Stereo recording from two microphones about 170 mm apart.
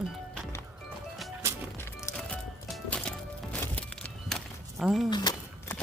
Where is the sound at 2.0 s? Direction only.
Centre (ahead or behind).